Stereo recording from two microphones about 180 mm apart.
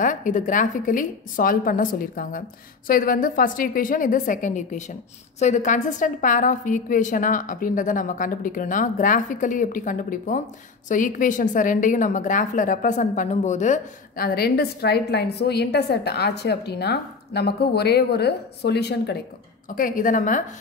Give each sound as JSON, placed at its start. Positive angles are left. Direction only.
{"t": 0.0, "sound": "a woman's voice", "side_deg": 45}
{"t": 19.7, "sound": "a woman's voice", "side_deg": 50}